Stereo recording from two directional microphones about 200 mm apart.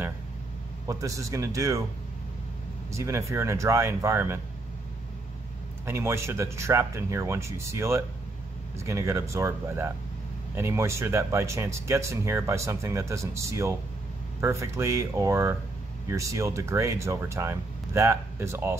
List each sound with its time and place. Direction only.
0.8 s speech: 15° right (ahead or behind)
2.9 s speech: 15° right (ahead or behind)
5.9 s speech: 15° right (ahead or behind)